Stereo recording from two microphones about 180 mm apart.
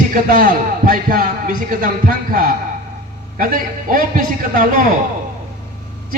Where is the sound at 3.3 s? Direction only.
50° right (ahead or behind).